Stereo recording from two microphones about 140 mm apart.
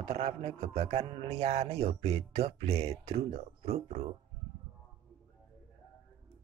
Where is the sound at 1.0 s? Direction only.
40° right (ahead or behind).